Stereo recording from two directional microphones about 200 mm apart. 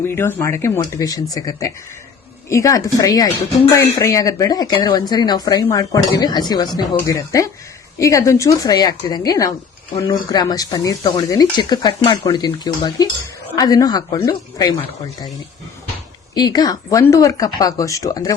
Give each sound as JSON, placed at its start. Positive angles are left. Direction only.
{"t": 0.0, "sound": "speech", "side_deg": 10}
{"t": 16.3, "sound": "speech", "side_deg": 20}